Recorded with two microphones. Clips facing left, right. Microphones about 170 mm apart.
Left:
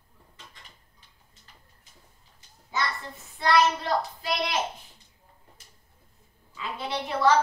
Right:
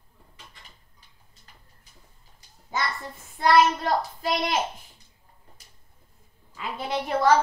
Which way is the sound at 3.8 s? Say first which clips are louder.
Right 2 dB; 45° right (ahead or behind).